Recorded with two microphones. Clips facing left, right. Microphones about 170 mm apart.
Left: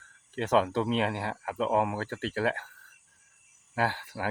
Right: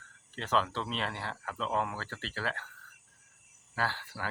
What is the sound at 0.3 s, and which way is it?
Speech, 50° left (ahead or behind).